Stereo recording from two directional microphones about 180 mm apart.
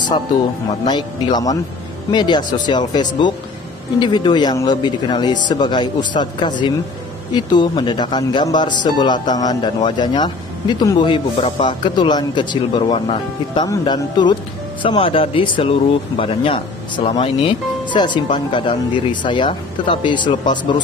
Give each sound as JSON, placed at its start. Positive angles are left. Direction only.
{"t": 0.8, "sound": "speech", "side_deg": 25}